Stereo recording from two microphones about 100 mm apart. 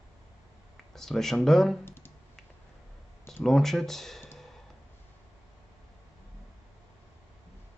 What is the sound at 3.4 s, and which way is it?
Speech, 5° left (ahead or behind).